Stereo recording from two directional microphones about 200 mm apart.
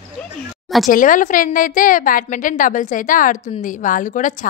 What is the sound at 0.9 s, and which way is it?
A woman's voice, 40° left (ahead or behind).